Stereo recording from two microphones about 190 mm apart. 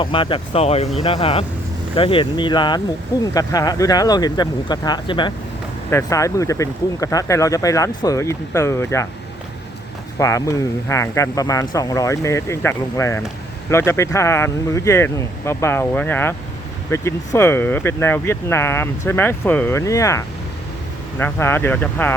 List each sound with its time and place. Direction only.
0.0 s speech: 25° left (ahead or behind)
10.2 s speech: 15° left (ahead or behind)